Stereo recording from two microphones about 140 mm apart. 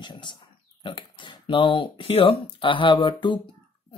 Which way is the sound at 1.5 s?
35° left (ahead or behind).